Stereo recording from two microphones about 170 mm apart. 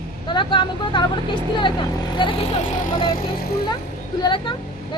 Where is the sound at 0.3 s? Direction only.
30° left (ahead or behind).